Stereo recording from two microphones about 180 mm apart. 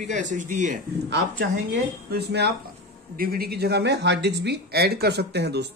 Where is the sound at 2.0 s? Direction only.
65° right (ahead or behind).